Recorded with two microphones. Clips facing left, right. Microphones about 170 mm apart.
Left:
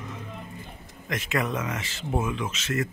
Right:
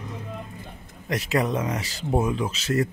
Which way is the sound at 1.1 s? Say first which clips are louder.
Right 4 dB; 35° right (ahead or behind).